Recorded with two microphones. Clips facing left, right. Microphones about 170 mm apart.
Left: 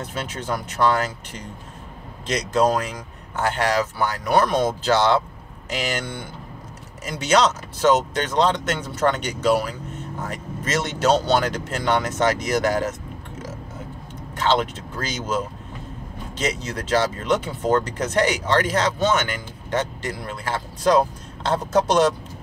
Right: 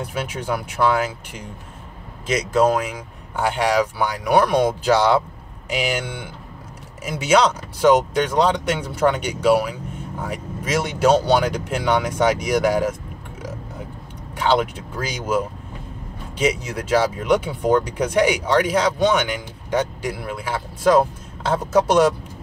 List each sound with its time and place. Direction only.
0.0 s speech: 10° right (ahead or behind)
14.3 s speech: 10° right (ahead or behind)